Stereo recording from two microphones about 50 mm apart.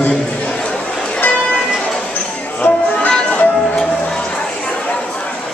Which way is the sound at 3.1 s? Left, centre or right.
Left.